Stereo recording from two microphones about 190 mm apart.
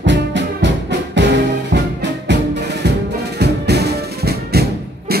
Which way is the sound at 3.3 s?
60° right (ahead or behind).